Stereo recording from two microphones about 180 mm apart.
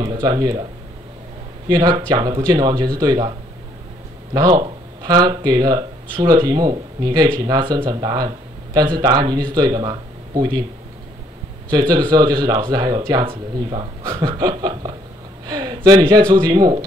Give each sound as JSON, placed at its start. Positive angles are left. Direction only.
{"t": 0.0, "sound": "speech", "side_deg": -20}
{"t": 1.7, "sound": "speech", "side_deg": -20}
{"t": 11.7, "sound": "speech", "side_deg": -25}